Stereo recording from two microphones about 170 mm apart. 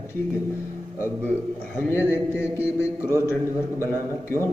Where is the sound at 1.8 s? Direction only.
15° left (ahead or behind).